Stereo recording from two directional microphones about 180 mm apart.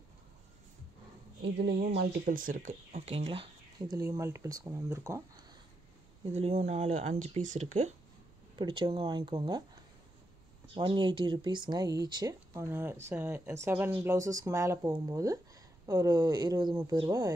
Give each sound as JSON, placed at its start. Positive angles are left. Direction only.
{"t": 1.4, "sound": "speech", "side_deg": -70}
{"t": 2.0, "sound": "speech", "side_deg": -50}
{"t": 3.9, "sound": "speech", "side_deg": -20}
{"t": 6.3, "sound": "speech", "side_deg": -40}
{"t": 8.5, "sound": "speech", "side_deg": -25}
{"t": 10.7, "sound": "speech", "side_deg": -30}